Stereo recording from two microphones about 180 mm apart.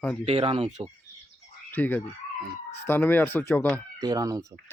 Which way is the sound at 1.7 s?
10° left (ahead or behind).